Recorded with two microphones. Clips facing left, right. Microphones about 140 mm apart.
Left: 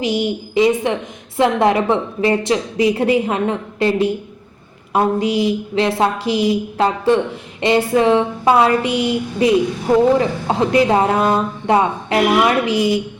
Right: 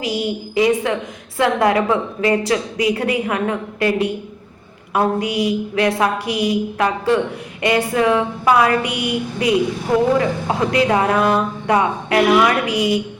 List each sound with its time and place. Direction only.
0.0 s speech: 25° left (ahead or behind)